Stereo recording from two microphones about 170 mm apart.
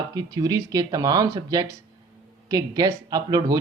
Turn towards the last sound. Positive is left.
turn(degrees=-25)  # may be behind; listen again after turning